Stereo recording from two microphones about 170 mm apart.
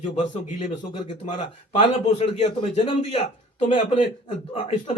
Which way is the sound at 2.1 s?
40° left (ahead or behind).